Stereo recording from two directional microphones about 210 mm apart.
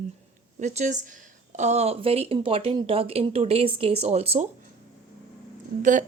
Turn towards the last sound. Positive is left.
turn(degrees=-35)  # may be behind; listen again after turning